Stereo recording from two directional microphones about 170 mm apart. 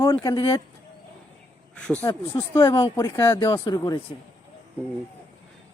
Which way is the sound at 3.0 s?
15° left (ahead or behind).